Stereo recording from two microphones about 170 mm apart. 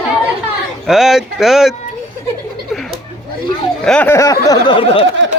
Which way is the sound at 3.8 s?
10° left (ahead or behind).